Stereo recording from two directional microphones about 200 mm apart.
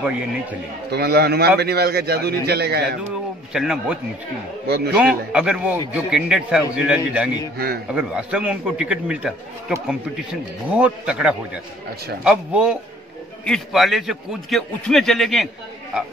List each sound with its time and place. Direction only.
0.8 s a man's voice: 55° right (ahead or behind)
3.5 s a man's voice: 5° right (ahead or behind)
4.6 s a man's voice: 55° right (ahead or behind)
4.9 s a man's voice: 5° right (ahead or behind)
7.5 s a man's voice: 50° right (ahead or behind)
7.9 s a man's voice: 5° right (ahead or behind)